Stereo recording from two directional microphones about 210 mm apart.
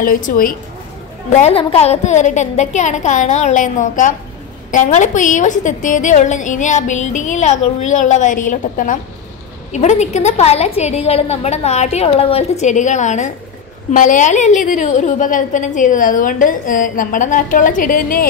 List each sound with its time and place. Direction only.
0.0 s a woman's voice: 40° left (ahead or behind)
1.3 s a woman's voice: 30° left (ahead or behind)